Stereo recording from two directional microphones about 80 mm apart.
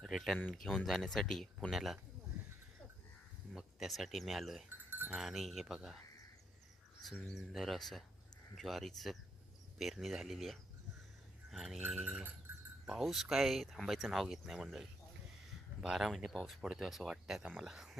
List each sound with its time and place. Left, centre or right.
0.0 s a sound: centre
0.5 s speech: centre
3.5 s speech: centre
4.9 s cowbell: right
5.1 s speech: centre
7.3 s speech: centre